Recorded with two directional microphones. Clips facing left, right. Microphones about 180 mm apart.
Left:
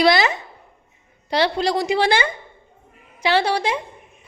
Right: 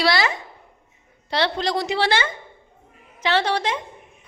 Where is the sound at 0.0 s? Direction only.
20° left (ahead or behind).